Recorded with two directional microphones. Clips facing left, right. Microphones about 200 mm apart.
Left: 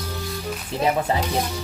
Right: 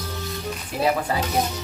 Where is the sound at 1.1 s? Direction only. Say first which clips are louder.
Left 2 dB; 25° left (ahead or behind).